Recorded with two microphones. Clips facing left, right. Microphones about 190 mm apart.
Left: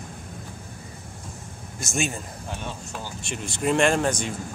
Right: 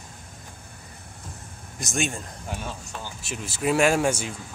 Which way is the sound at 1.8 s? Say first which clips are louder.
Even; centre (ahead or behind).